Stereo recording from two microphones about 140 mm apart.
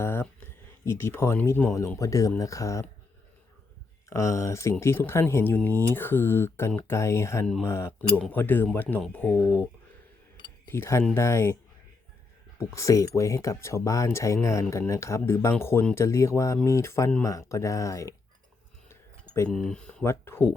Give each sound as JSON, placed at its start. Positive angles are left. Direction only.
{"t": 0.0, "sound": "a sound", "side_deg": 15}
{"t": 0.9, "sound": "speech", "side_deg": 20}
{"t": 4.1, "sound": "speech", "side_deg": 20}
{"t": 10.7, "sound": "speech", "side_deg": 20}
{"t": 12.5, "sound": "speech", "side_deg": 20}
{"t": 18.9, "sound": "a sound", "side_deg": 20}
{"t": 19.5, "sound": "speech", "side_deg": 5}